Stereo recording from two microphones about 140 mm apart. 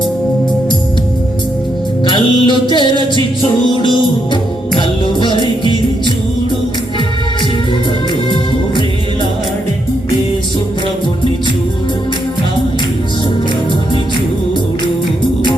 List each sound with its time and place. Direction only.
2.0 s music: 35° left (ahead or behind)